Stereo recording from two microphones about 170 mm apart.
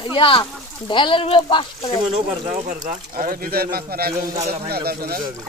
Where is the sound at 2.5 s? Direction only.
45° right (ahead or behind).